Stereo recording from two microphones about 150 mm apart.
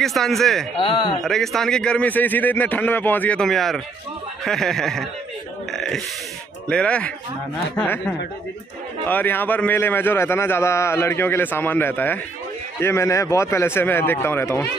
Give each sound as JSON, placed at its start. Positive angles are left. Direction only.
{"t": 0.0, "sound": "speech", "side_deg": 0}
{"t": 0.7, "sound": "speech", "side_deg": 35}
{"t": 1.2, "sound": "a man's voice", "side_deg": 0}
{"t": 5.7, "sound": "burping", "side_deg": 5}
{"t": 6.7, "sound": "a man's voice", "side_deg": 5}
{"t": 9.0, "sound": "a man's voice", "side_deg": 15}